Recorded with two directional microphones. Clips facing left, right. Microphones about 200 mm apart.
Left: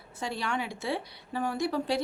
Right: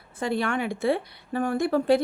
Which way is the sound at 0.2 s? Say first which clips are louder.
Right 7 dB; 55° right (ahead or behind).